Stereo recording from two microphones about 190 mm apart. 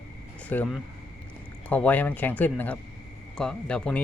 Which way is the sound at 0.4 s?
10° left (ahead or behind).